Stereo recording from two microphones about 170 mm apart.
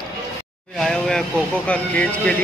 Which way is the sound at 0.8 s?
5° left (ahead or behind).